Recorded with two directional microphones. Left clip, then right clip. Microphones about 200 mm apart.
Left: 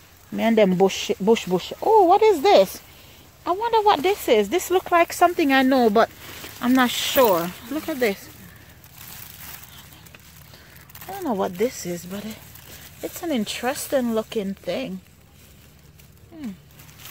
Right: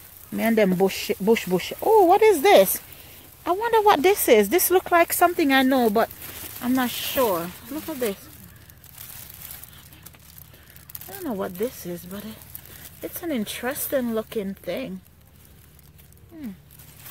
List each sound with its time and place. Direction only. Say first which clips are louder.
0.4 s speech: left 3 dB; centre (ahead or behind)
6.6 s speech: left 5 dB; 20° left (ahead or behind)
11.2 s speech: left 5 dB; 5° left (ahead or behind)
16.3 s speech: left 2 dB; centre (ahead or behind)